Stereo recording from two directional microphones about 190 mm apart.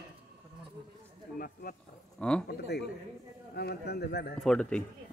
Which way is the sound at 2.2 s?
5° left (ahead or behind).